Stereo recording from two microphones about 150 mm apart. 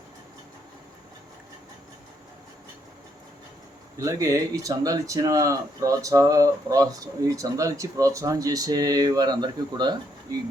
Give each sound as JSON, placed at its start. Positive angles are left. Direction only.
{"t": 3.9, "sound": "speech", "side_deg": -20}